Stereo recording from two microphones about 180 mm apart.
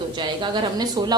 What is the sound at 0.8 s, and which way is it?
Speech, 20° right (ahead or behind).